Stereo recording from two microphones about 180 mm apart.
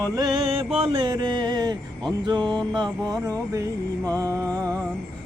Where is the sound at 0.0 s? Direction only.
20° right (ahead or behind).